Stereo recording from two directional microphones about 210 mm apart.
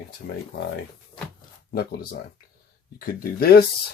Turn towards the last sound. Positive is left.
turn(degrees=45)  # may be behind; listen again after turning